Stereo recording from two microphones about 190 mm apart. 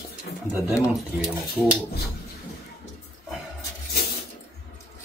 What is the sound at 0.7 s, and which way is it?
Speech, 5° right (ahead or behind).